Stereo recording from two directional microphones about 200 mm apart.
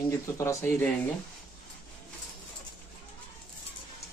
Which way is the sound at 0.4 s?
15° left (ahead or behind).